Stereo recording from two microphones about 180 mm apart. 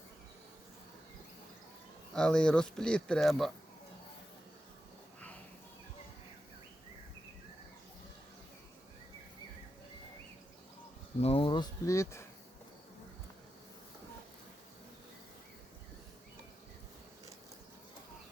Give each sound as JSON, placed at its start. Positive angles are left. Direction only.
{"t": 2.1, "sound": "speech", "side_deg": 5}
{"t": 11.2, "sound": "speech", "side_deg": 30}